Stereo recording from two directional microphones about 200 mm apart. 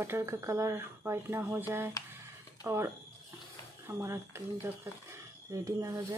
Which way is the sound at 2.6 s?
15° right (ahead or behind).